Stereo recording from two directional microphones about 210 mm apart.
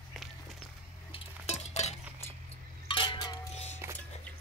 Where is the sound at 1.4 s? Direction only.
30° left (ahead or behind).